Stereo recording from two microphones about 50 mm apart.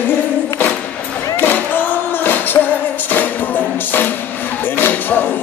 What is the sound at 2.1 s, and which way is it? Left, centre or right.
Music, left.